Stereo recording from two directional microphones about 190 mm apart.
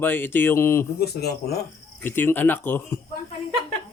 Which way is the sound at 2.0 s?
10° left (ahead or behind).